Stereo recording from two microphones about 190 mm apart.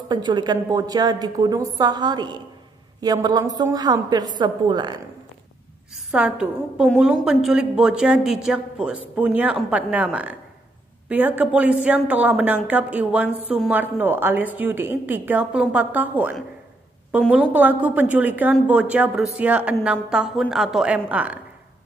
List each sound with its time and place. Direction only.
0.1 s a woman's voice: 20° right (ahead or behind)
6.1 s a woman's voice: 5° right (ahead or behind)